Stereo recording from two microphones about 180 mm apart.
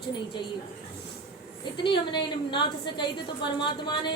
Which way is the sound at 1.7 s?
25° left (ahead or behind).